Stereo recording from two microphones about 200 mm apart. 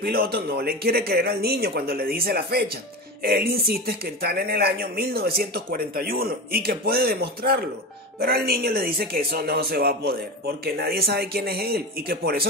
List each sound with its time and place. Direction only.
0.0 s speech: 50° right (ahead or behind)